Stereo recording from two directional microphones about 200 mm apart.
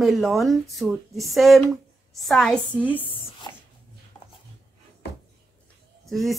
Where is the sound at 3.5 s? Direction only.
20° left (ahead or behind).